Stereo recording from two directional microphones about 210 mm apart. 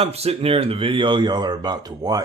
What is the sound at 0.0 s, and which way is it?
Speech, 30° right (ahead or behind).